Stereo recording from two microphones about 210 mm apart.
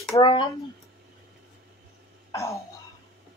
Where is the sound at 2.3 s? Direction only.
15° left (ahead or behind).